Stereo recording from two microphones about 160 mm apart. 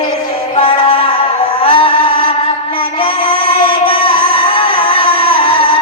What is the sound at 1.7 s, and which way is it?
Music, 35° left (ahead or behind).